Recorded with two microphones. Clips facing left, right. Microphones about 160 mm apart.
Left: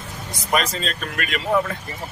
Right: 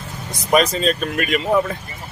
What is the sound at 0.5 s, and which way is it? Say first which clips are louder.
Speech: right 7 dB; 15° right (ahead or behind).